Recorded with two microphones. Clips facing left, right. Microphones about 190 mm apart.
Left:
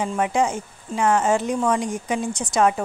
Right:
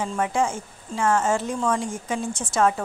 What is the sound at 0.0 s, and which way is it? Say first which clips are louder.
A woman's voice: left 2 dB; 15° left (ahead or behind).